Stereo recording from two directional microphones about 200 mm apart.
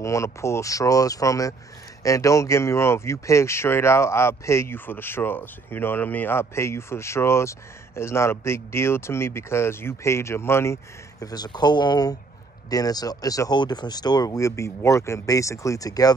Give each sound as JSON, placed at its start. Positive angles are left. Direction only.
{"t": 0.0, "sound": "speech", "side_deg": 15}